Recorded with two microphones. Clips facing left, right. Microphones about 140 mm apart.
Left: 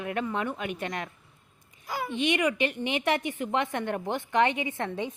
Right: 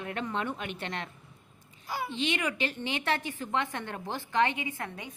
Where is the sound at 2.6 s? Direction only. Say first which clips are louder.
Left 4 dB; 15° left (ahead or behind).